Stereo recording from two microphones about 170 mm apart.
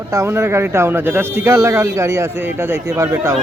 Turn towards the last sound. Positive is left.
turn(degrees=-15)  # may be behind; listen again after turning